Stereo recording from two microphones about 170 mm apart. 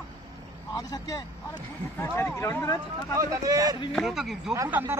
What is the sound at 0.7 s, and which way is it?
Speech, 20° left (ahead or behind).